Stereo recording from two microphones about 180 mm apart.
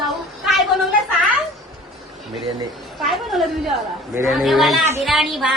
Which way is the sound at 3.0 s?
Centre (ahead or behind).